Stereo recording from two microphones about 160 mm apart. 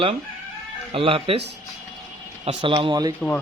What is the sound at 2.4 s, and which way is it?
Speech, 35° right (ahead or behind).